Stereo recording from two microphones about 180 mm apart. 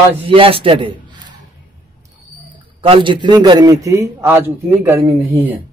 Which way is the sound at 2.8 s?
30° right (ahead or behind).